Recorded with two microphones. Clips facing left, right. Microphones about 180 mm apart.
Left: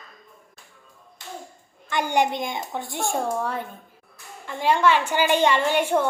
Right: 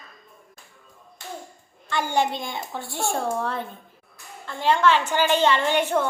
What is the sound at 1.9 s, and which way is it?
A woman's voice, 15° left (ahead or behind).